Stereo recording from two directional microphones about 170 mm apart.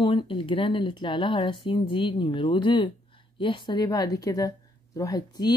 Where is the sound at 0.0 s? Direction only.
30° left (ahead or behind).